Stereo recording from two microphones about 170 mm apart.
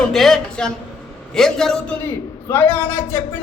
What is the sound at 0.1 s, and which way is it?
A man's voice, centre (ahead or behind).